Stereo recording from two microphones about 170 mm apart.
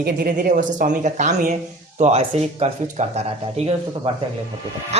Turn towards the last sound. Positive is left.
turn(degrees=-40)  # may be behind; listen again after turning